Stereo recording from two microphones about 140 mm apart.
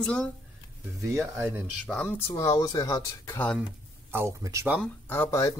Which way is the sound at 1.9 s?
10° left (ahead or behind).